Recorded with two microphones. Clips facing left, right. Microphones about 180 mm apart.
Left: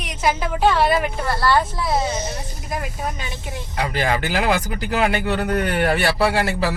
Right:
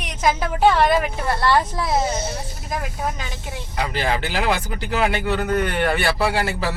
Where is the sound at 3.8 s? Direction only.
45° left (ahead or behind).